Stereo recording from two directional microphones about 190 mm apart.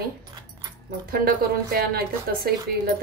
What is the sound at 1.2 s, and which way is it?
A woman's voice, 50° right (ahead or behind).